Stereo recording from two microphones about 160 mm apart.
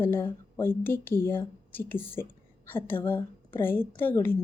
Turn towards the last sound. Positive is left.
turn(degrees=15)  # may be behind; listen again after turning